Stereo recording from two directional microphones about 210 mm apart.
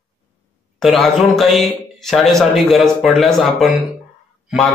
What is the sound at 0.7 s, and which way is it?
A man's voice, centre (ahead or behind).